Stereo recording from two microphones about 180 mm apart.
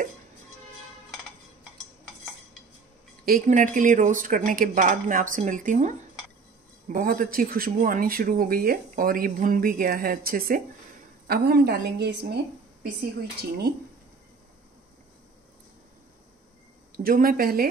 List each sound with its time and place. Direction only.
3.3 s a woman's voice: 50° right (ahead or behind); by 12.4 s 65° right (ahead or behind)
16.9 s a woman's voice: 55° right (ahead or behind)